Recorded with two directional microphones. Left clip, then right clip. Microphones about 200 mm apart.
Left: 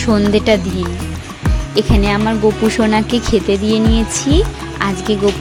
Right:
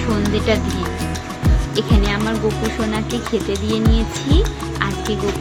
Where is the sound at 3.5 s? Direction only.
40° left (ahead or behind).